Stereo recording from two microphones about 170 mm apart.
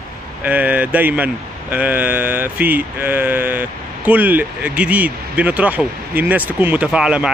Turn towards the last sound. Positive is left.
turn(degrees=-5)  # may be behind; listen again after turning